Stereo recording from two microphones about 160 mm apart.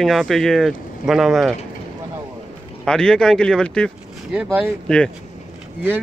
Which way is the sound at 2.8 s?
5° left (ahead or behind).